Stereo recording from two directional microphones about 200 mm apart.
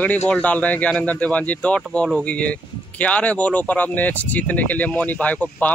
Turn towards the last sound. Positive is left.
turn(degrees=10)  # may be behind; listen again after turning